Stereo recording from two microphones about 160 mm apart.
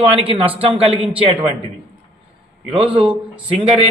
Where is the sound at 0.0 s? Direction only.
35° right (ahead or behind).